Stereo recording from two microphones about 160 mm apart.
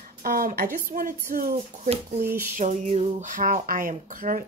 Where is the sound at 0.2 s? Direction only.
65° right (ahead or behind).